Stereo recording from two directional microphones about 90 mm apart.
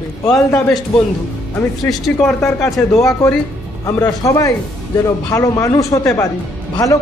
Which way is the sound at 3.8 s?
40° left (ahead or behind).